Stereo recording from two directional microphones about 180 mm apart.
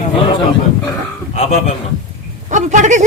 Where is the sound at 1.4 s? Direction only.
40° left (ahead or behind).